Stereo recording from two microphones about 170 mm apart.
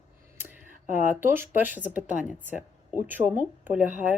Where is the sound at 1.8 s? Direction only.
50° left (ahead or behind).